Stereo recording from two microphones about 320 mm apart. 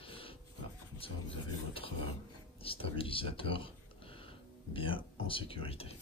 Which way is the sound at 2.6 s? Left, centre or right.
Centre.